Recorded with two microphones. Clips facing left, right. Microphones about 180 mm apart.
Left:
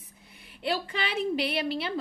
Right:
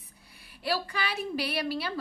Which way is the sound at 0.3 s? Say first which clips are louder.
Left 1 dB; 20° left (ahead or behind).